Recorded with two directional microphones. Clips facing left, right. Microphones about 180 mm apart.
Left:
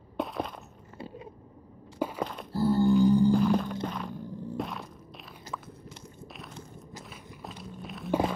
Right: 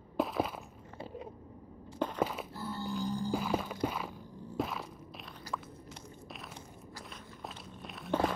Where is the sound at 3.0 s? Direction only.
65° left (ahead or behind).